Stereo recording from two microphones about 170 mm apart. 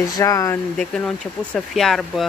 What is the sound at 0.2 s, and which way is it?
Speech, 20° left (ahead or behind).